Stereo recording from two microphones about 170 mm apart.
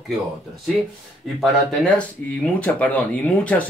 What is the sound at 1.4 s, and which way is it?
Speech, 5° left (ahead or behind).